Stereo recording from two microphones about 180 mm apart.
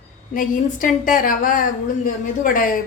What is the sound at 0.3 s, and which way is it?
A woman's voice, 50° left (ahead or behind).